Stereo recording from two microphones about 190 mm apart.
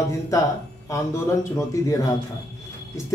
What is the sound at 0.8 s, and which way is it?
Speech, 15° left (ahead or behind).